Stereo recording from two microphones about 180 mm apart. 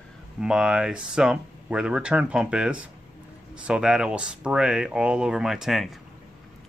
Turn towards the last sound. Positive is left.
turn(degrees=0)  # may be behind; listen again after turning